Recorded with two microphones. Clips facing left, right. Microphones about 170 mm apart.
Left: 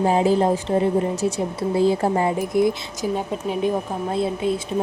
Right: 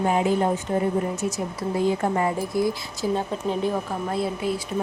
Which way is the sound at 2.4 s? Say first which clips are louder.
Left 4 dB; 20° left (ahead or behind).